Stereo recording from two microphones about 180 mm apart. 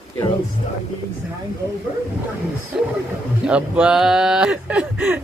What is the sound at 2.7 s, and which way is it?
Speech, 5° right (ahead or behind).